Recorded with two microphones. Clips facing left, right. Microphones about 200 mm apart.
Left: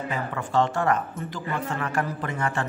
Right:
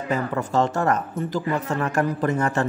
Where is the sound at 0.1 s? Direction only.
40° right (ahead or behind).